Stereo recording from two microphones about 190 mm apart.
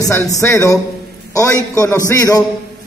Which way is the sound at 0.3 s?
15° left (ahead or behind).